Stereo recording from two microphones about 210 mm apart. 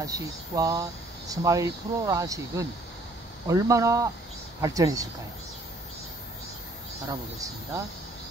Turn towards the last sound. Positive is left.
turn(degrees=-15)  # may be behind; listen again after turning